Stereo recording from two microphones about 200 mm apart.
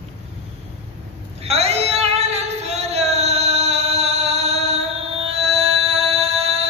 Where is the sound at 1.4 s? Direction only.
30° right (ahead or behind).